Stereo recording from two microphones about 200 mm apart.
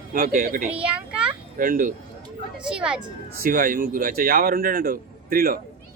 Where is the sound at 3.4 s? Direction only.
45° right (ahead or behind).